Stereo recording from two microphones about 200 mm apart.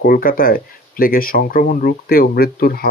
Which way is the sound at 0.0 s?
45° left (ahead or behind).